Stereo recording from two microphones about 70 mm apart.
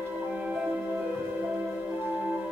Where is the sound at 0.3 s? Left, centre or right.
Centre.